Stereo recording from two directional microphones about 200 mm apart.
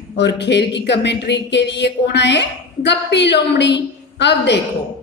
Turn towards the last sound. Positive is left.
turn(degrees=60)  # may be behind; listen again after turning